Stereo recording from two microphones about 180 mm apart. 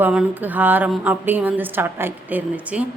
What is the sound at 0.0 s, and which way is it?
A woman's voice, 5° right (ahead or behind).